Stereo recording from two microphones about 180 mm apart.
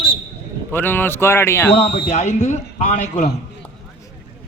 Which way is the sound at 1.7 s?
35° left (ahead or behind).